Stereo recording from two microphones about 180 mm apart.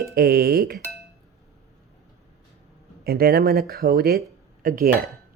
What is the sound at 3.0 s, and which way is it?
Speech, 60° right (ahead or behind).